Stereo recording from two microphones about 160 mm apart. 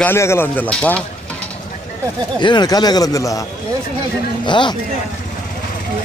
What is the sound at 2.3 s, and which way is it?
A man's voice, 30° left (ahead or behind).